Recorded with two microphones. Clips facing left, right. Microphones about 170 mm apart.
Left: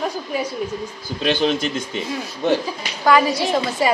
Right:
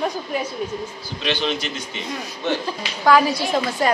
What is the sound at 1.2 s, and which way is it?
Speech, 45° left (ahead or behind).